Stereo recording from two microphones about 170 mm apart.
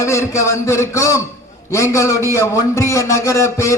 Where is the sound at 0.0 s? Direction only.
15° left (ahead or behind).